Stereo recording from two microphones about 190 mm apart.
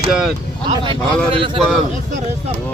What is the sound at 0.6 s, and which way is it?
Speech, 25° right (ahead or behind).